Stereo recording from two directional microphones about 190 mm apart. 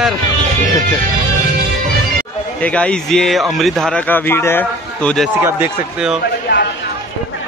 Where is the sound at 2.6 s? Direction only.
5° left (ahead or behind).